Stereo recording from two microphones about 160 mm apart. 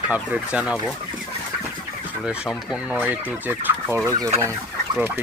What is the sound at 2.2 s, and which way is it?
Speech, 5° right (ahead or behind).